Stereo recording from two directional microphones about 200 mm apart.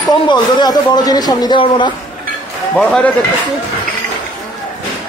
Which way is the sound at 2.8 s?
5° left (ahead or behind).